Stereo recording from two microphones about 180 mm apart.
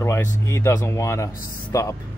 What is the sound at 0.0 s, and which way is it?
Speech, 15° left (ahead or behind).